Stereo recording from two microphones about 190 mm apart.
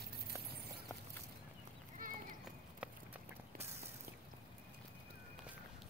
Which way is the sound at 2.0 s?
45° right (ahead or behind).